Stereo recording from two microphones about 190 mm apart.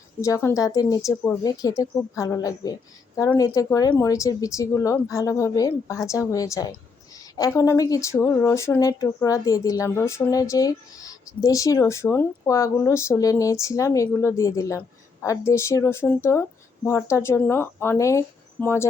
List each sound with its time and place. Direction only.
0.2 s speech: 15° left (ahead or behind)